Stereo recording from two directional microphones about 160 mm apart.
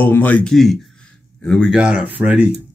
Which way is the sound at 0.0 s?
10° left (ahead or behind).